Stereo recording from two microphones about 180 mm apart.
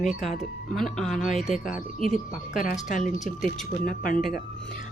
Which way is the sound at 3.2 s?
Centre (ahead or behind).